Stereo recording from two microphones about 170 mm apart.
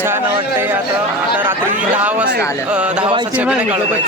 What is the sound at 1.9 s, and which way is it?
Speech, 10° right (ahead or behind).